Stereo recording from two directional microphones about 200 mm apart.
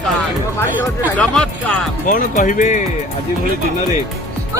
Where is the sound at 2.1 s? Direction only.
40° left (ahead or behind).